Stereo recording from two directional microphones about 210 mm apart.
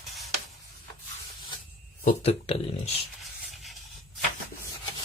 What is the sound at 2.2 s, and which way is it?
Speech, 30° left (ahead or behind).